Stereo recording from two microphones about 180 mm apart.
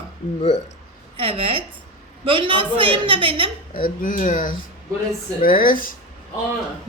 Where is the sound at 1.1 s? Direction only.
30° right (ahead or behind).